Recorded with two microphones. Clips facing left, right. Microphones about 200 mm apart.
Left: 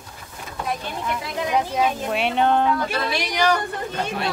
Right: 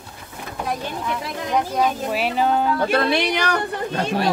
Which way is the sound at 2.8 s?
60° right (ahead or behind).